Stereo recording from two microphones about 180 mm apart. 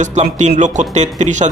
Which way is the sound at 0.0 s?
40° right (ahead or behind).